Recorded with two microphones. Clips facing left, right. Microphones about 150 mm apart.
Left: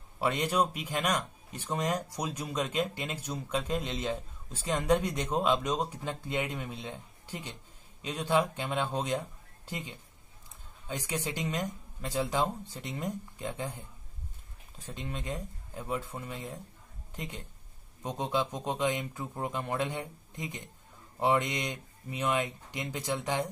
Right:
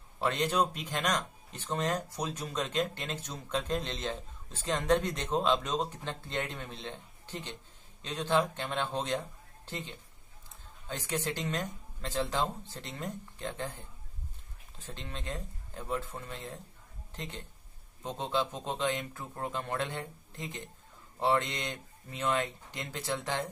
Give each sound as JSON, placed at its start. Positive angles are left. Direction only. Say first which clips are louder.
{"t": 0.2, "sound": "a woman's voice", "louder": "left 1 dB", "side_deg": 10}